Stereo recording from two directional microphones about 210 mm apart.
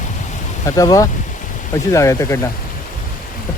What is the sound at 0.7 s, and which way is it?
Speech, 15° left (ahead or behind).